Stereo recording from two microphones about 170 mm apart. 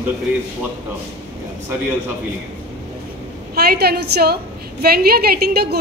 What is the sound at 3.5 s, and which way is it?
A woman's voice, 70° right (ahead or behind).